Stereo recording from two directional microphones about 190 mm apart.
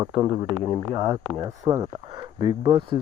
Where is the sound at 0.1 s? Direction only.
25° right (ahead or behind).